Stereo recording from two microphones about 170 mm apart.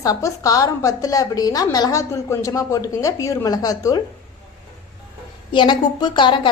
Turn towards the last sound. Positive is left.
turn(degrees=30)  # may be behind; listen again after turning